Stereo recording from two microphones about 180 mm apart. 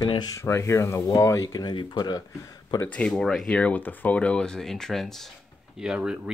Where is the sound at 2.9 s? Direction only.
5° left (ahead or behind).